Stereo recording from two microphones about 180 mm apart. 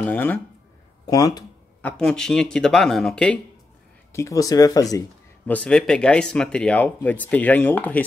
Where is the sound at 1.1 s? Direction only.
20° left (ahead or behind).